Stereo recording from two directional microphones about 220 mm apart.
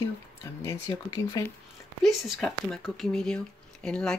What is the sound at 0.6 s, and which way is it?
Speech, 15° left (ahead or behind).